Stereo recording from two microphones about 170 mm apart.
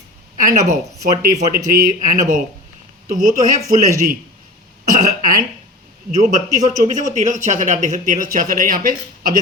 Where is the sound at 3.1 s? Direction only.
50° right (ahead or behind).